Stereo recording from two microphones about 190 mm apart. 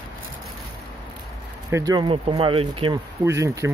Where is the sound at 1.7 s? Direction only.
20° right (ahead or behind).